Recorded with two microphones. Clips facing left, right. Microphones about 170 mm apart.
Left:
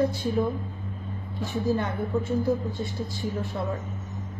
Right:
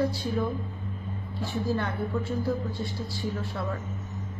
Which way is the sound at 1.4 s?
20° left (ahead or behind).